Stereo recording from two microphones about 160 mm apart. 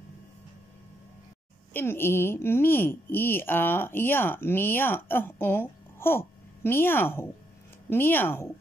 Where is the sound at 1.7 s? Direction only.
15° left (ahead or behind).